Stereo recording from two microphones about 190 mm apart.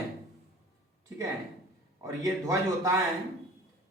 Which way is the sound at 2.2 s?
15° right (ahead or behind).